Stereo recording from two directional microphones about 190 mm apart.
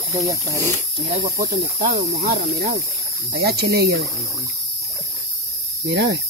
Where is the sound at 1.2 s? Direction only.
50° right (ahead or behind).